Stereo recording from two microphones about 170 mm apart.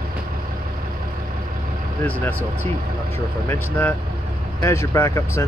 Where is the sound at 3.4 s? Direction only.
15° left (ahead or behind).